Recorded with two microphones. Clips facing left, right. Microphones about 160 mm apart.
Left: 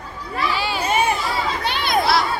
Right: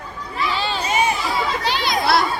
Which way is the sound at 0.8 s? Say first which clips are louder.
Left 1 dB; 55° left (ahead or behind).